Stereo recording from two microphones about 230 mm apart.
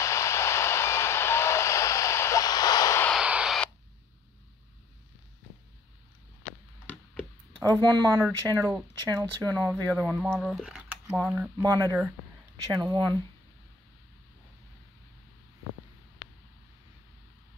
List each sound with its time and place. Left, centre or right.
0.0 s vehicle: centre
3.2 s radio: centre
7.6 s speech: centre